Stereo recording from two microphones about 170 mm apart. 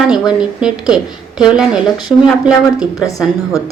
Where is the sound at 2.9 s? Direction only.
20° left (ahead or behind).